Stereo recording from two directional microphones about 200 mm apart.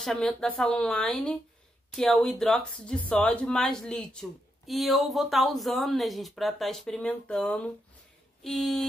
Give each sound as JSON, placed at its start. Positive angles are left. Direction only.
{"t": 0.0, "sound": "speech", "side_deg": 0}